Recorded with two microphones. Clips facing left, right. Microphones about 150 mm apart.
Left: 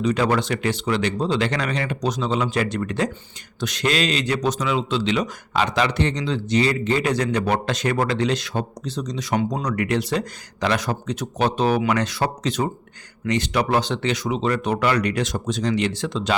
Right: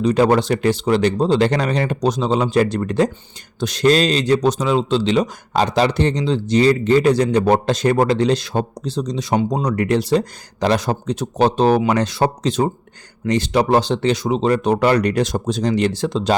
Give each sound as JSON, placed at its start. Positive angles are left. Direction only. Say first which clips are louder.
{"t": 0.0, "sound": "a man's voice", "louder": "right 6 dB", "side_deg": -35}